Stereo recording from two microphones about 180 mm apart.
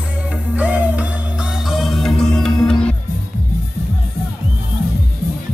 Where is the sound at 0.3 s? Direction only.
10° right (ahead or behind).